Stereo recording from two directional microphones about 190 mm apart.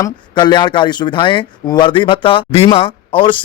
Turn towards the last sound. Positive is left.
turn(degrees=25)  # may be behind; listen again after turning